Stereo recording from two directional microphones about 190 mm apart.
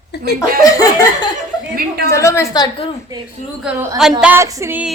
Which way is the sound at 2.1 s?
15° left (ahead or behind).